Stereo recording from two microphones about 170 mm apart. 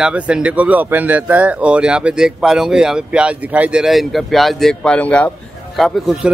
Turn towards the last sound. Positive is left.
turn(degrees=0)  # may be behind; listen again after turning